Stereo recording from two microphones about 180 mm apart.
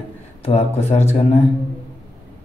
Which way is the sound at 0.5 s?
35° left (ahead or behind).